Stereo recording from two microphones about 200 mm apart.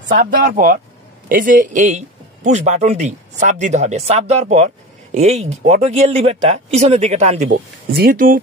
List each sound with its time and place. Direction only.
0.1 s a man's voice: 45° right (ahead or behind)
7.9 s speech: 50° right (ahead or behind)